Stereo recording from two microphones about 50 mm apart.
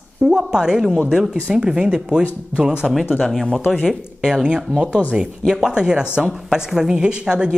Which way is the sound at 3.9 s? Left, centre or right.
Centre.